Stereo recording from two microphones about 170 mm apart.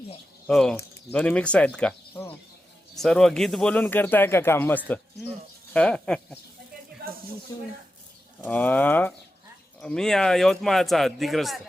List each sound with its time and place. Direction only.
0.4 s a man's voice: 5° left (ahead or behind)
7.5 s speech: 20° left (ahead or behind)
8.4 s a man's voice: 10° left (ahead or behind)